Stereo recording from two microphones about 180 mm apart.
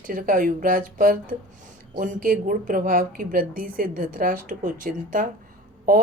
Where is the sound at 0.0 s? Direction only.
50° right (ahead or behind).